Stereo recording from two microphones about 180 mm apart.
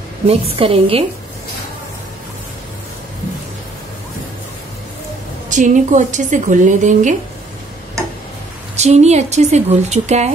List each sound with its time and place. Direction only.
0.3 s speech: 30° right (ahead or behind)
5.5 s a woman's voice: 45° right (ahead or behind)
8.7 s speech: 40° right (ahead or behind)